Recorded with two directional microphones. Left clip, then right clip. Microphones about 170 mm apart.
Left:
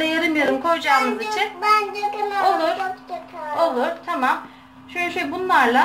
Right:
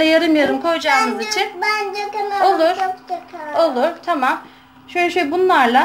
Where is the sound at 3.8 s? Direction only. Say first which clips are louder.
Right 4 dB; 55° right (ahead or behind).